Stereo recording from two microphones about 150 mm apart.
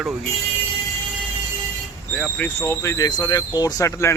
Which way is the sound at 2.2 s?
10° left (ahead or behind).